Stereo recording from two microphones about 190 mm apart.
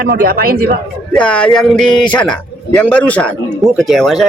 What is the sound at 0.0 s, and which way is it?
Speech, 50° right (ahead or behind).